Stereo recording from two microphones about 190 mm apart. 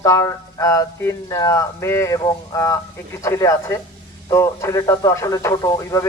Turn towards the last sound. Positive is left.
turn(degrees=15)  # may be behind; listen again after turning